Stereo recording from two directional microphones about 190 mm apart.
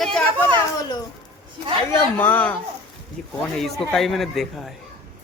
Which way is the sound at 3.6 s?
Centre (ahead or behind).